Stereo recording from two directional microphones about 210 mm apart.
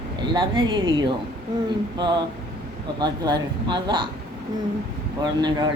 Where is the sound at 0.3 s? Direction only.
20° right (ahead or behind).